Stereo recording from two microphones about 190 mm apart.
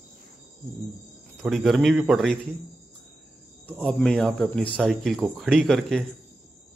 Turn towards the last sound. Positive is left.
turn(degrees=0)  # may be behind; listen again after turning